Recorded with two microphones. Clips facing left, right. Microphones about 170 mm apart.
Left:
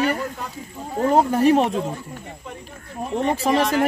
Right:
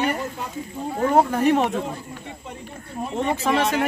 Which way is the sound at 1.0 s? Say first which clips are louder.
Left 2 dB; 30° left (ahead or behind).